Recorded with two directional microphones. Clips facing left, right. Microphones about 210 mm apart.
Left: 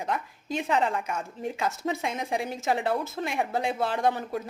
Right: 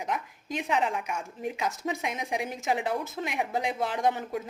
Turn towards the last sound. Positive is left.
turn(degrees=-20)  # may be behind; listen again after turning